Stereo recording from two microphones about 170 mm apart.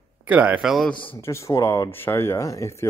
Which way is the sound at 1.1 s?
15° left (ahead or behind).